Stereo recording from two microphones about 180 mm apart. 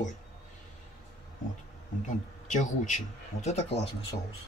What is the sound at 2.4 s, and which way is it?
Speech, 45° left (ahead or behind).